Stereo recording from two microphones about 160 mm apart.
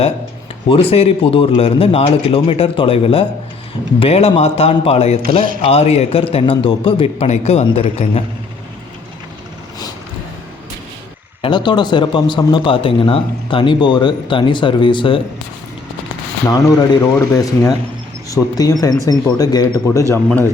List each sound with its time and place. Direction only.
0.7 s speech: 35° left (ahead or behind)
11.4 s speech: 30° left (ahead or behind)
16.5 s speech: 25° left (ahead or behind)